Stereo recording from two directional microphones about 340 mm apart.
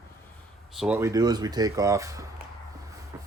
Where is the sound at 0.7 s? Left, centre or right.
Centre.